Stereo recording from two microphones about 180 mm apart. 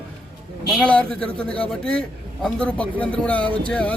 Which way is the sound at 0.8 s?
5° left (ahead or behind).